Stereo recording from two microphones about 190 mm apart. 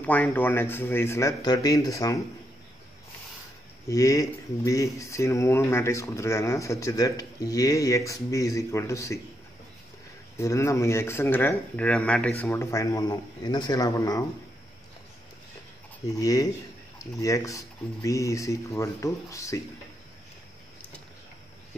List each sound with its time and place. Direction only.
0.0 s speech: 10° left (ahead or behind)
3.9 s speech: 15° left (ahead or behind)
10.3 s speech: 15° left (ahead or behind)
16.1 s speech: 20° left (ahead or behind)